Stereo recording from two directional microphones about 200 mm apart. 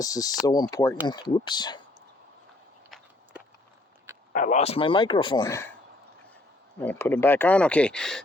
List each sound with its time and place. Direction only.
0.0 s speech: 15° left (ahead or behind)
4.3 s speech: 40° left (ahead or behind); by 5.7 s 15° left (ahead or behind)
6.7 s speech: 10° left (ahead or behind)